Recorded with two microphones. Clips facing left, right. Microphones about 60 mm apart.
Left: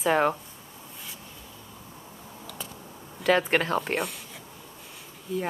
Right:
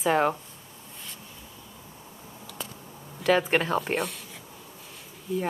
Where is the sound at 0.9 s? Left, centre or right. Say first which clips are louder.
Even; centre.